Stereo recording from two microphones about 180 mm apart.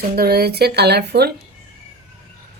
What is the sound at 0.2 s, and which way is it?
Speech, 60° right (ahead or behind).